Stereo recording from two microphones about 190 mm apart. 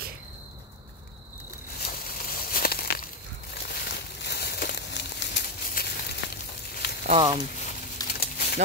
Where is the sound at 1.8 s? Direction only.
50° left (ahead or behind).